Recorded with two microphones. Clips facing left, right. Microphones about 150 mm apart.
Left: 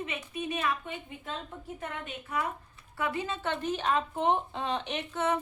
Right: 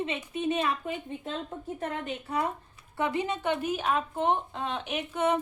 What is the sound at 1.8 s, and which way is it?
Speech, 30° right (ahead or behind).